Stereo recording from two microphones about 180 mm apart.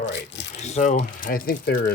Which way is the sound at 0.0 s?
80° left.